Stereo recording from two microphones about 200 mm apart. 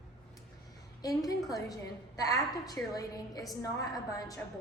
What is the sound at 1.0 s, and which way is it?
A woman's voice, 20° left (ahead or behind).